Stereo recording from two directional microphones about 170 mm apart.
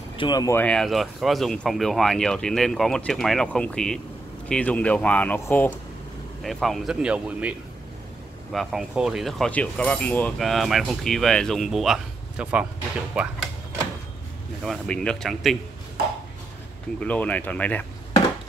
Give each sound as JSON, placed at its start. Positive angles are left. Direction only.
{"t": 0.2, "sound": "speech", "side_deg": 25}
{"t": 0.6, "sound": "speech", "side_deg": 5}
{"t": 6.4, "sound": "speech", "side_deg": 0}
{"t": 8.5, "sound": "speech", "side_deg": 0}
{"t": 14.6, "sound": "speech", "side_deg": 5}
{"t": 17.0, "sound": "speech", "side_deg": 10}